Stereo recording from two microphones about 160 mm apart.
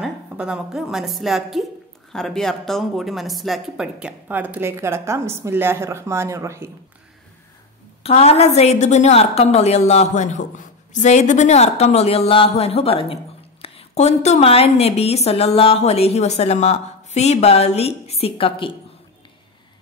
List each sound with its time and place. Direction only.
0.0 s a woman's voice: 5° right (ahead or behind)
8.0 s a woman's voice: 40° left (ahead or behind)